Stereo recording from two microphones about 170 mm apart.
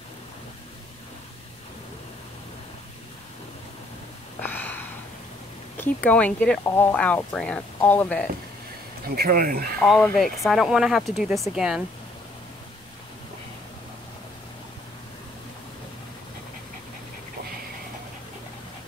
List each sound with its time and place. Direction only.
4.4 s gasp: 10° left (ahead or behind)
5.8 s speech: 10° left (ahead or behind)
9.0 s speech: 65° right (ahead or behind)
10.1 s speech: centre (ahead or behind)